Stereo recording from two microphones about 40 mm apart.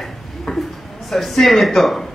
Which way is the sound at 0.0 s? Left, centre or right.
Centre.